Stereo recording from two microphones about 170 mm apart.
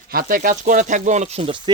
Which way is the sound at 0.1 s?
60° right (ahead or behind).